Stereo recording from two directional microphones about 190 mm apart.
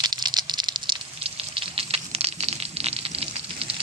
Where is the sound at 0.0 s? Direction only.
20° right (ahead or behind).